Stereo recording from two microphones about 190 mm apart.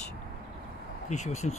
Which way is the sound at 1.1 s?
35° left (ahead or behind).